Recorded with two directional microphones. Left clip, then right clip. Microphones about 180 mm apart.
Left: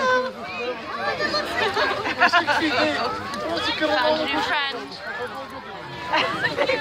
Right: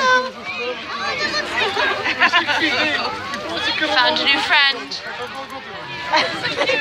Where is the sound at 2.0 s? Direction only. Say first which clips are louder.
Right 2 dB; 50° left (ahead or behind).